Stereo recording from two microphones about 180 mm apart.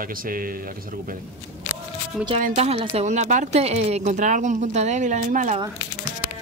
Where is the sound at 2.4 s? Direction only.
35° right (ahead or behind).